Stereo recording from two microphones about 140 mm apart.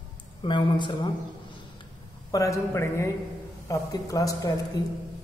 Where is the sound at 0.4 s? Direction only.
35° left (ahead or behind).